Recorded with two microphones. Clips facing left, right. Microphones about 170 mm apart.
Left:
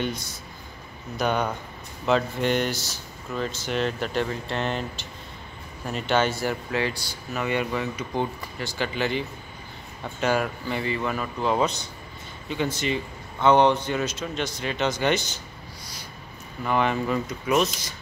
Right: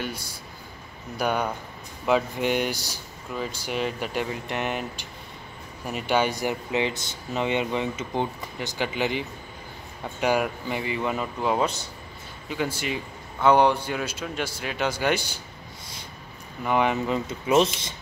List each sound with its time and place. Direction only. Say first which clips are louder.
1.1 s speech: left 1 dB; 10° right (ahead or behind)
10.2 s speech: right 1 dB; 15° right (ahead or behind)
16.6 s speech: right 1 dB; 15° right (ahead or behind)